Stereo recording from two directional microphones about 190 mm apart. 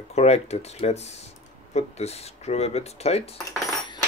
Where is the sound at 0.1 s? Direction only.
35° left (ahead or behind).